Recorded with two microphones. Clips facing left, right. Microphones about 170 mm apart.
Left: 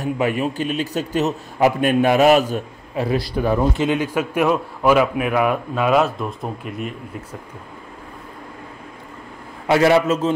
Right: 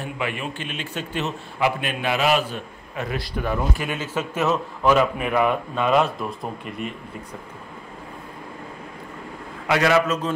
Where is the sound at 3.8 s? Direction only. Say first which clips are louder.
Left 7 dB; 15° left (ahead or behind).